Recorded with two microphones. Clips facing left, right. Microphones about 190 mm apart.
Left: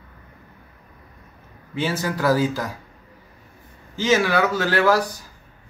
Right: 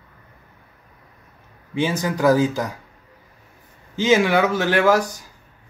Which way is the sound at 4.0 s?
20° right (ahead or behind).